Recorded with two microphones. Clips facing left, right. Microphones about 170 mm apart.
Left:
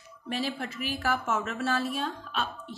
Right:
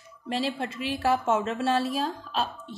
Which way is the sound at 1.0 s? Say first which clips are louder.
Right 6 dB; 30° right (ahead or behind).